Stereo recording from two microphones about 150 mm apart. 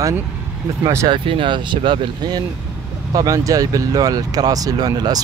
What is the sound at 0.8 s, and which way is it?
Speech, 30° right (ahead or behind).